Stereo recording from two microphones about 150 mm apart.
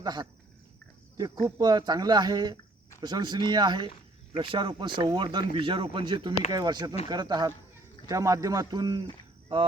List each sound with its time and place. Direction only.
0.0 s speech: 25° right (ahead or behind)